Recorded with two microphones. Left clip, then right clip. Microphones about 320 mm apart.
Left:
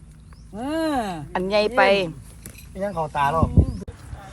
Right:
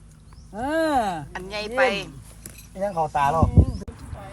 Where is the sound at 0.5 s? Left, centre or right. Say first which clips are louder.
Right 2 dB; centre.